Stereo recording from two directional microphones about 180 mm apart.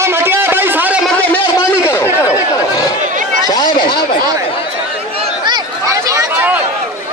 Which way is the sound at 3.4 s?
20° left (ahead or behind).